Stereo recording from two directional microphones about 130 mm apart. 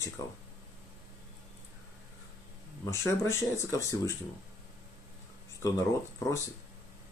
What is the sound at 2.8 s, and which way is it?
Speech, 20° left (ahead or behind).